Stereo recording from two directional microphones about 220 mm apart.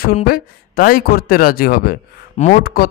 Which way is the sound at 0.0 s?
40° left (ahead or behind).